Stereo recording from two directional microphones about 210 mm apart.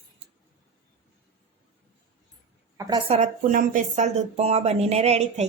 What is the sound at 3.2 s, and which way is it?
Speech, 40° right (ahead or behind).